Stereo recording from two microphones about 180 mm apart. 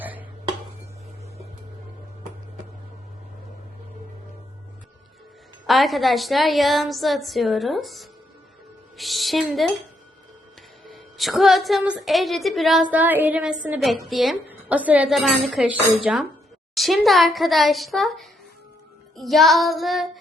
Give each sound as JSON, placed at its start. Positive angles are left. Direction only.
{"t": 0.0, "sound": "a sound", "side_deg": -10}
{"t": 5.6, "sound": "a woman's voice", "side_deg": 0}
{"t": 10.8, "sound": "a woman's voice", "side_deg": 0}